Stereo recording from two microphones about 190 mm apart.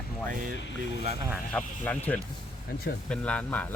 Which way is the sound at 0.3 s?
45° right (ahead or behind).